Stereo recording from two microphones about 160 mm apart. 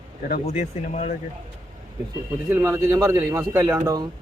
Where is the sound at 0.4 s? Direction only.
45° left (ahead or behind).